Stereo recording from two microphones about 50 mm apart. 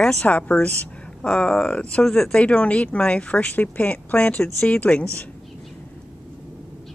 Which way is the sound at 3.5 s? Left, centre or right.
Left.